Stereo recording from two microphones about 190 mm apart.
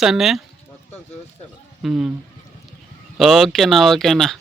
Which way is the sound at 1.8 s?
Centre (ahead or behind).